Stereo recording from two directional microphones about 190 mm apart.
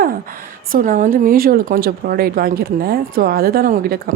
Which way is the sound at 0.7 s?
45° right (ahead or behind).